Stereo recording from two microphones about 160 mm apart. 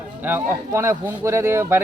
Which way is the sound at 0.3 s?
15° right (ahead or behind).